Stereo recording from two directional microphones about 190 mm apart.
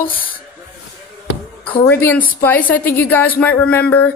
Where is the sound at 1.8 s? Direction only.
10° left (ahead or behind).